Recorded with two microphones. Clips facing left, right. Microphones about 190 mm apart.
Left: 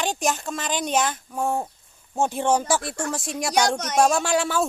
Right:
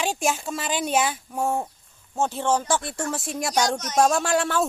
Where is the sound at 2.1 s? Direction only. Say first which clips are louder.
Left 2 dB; 15° left (ahead or behind).